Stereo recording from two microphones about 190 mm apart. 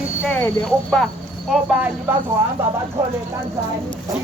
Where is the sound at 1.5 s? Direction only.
5° right (ahead or behind).